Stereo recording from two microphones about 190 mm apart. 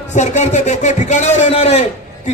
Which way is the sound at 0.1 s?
35° left (ahead or behind).